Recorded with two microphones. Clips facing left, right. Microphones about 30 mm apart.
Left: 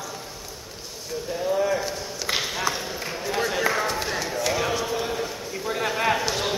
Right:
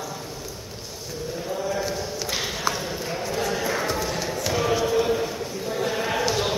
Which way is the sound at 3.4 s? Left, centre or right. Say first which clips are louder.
Left 2 dB; left.